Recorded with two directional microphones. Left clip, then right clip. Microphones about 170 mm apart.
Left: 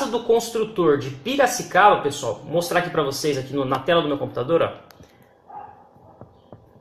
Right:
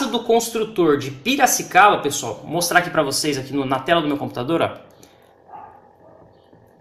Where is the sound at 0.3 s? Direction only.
10° right (ahead or behind).